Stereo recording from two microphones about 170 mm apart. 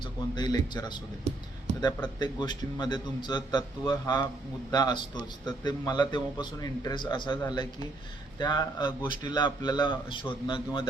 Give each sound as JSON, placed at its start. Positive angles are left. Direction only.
{"t": 0.0, "sound": "a man's voice", "side_deg": 25}